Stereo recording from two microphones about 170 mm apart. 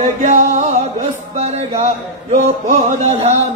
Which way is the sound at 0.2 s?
45° right (ahead or behind).